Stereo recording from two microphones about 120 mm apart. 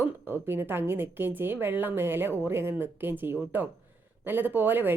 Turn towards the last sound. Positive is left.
turn(degrees=-15)  # may be behind; listen again after turning